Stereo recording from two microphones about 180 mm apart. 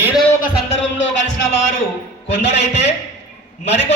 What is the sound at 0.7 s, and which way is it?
Music, 90° left.